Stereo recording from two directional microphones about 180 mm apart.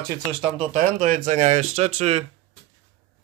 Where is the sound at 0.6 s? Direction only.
45° right (ahead or behind).